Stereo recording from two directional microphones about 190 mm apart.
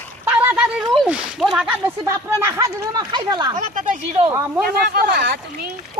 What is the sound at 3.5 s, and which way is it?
Speech, 40° right (ahead or behind).